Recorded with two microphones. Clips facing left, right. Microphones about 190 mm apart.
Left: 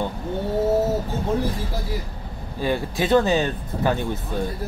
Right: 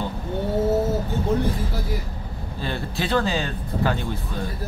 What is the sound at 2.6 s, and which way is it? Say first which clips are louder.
Speech: left 5 dB; 15° left (ahead or behind).